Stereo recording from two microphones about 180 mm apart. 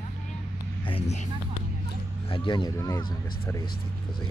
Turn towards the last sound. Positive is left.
turn(degrees=15)  # may be behind; listen again after turning